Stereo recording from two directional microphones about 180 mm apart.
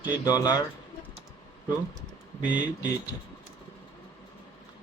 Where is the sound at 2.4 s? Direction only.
10° right (ahead or behind).